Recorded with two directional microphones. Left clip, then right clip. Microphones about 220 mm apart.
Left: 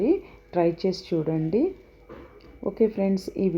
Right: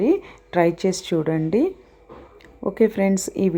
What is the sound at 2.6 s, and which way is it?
Speech, 25° right (ahead or behind).